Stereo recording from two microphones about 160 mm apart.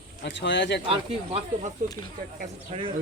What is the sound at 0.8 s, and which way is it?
Speech, 35° right (ahead or behind).